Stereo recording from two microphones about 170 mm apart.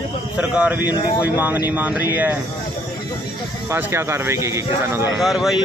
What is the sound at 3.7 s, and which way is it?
Speech, 15° right (ahead or behind).